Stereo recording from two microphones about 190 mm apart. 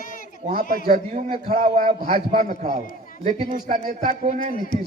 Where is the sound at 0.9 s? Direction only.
40° right (ahead or behind).